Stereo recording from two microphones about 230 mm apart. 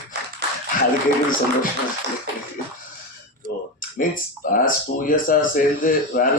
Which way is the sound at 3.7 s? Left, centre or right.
Left.